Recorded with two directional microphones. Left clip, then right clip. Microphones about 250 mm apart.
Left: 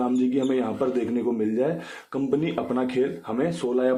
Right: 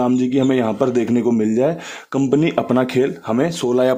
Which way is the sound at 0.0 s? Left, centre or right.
Right.